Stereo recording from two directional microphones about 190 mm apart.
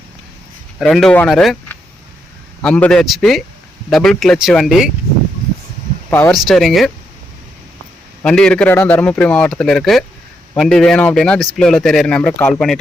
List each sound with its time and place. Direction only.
0.8 s speech: centre (ahead or behind)
6.1 s speech: 10° left (ahead or behind)
6.3 s speech: centre (ahead or behind)
8.2 s speech: 5° left (ahead or behind)